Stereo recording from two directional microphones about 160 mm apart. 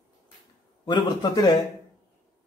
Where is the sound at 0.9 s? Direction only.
25° left (ahead or behind).